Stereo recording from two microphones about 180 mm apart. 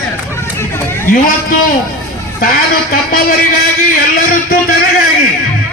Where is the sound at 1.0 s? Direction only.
50° left (ahead or behind).